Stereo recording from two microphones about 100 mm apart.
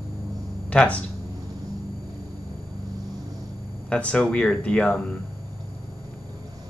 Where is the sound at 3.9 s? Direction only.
15° left (ahead or behind).